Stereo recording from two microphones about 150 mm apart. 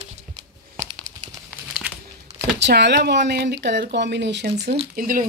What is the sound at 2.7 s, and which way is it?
Speech, 90° right.